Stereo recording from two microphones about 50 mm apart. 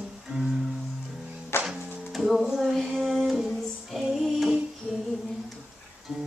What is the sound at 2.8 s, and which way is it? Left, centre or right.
Female singing, centre.